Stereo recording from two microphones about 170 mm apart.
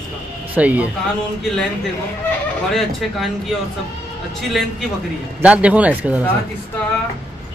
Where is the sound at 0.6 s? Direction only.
10° right (ahead or behind).